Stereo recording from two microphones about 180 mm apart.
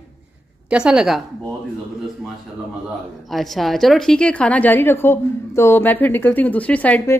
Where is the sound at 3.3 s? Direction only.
Centre (ahead or behind).